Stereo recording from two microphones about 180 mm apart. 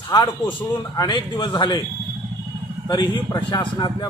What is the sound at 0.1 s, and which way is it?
A man's voice, 20° left (ahead or behind).